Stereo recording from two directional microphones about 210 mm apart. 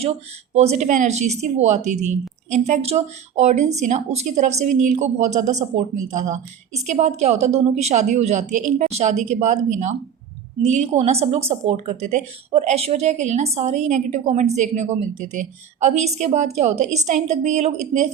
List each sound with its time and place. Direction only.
0.5 s a woman's voice: 30° right (ahead or behind)